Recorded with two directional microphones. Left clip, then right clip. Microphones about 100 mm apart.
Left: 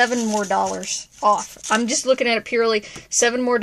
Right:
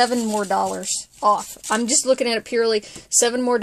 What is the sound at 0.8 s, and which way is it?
Speech, 40° right (ahead or behind).